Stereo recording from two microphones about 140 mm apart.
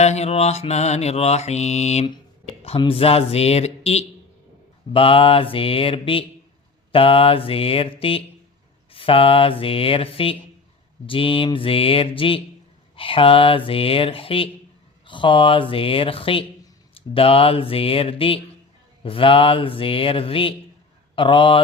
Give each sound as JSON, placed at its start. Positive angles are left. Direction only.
{"t": 0.0, "sound": "mantra", "side_deg": 50}
{"t": 2.6, "sound": "mantra", "side_deg": 40}
{"t": 4.9, "sound": "speech", "side_deg": 40}